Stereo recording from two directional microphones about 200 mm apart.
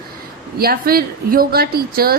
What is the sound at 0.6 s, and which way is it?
A woman's voice, 50° right (ahead or behind).